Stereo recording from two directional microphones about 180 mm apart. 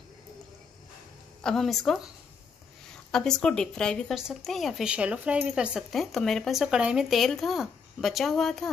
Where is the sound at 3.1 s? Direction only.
5° left (ahead or behind).